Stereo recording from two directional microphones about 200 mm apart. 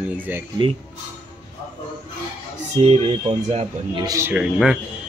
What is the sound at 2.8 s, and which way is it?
A man's voice, 30° right (ahead or behind).